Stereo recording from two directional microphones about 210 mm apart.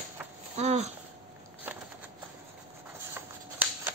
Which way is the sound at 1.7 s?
10° right (ahead or behind).